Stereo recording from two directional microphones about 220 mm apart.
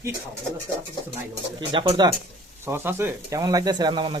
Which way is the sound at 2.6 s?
10° right (ahead or behind).